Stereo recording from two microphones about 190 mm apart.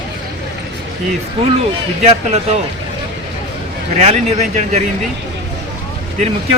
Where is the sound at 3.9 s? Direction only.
35° right (ahead or behind).